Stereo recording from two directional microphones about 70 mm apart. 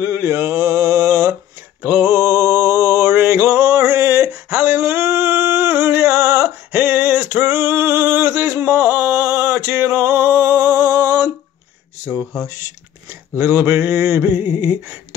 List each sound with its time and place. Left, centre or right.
0.0 s mantra: right
1.8 s mantra: right
12.4 s speech: right
13.4 s a sound: right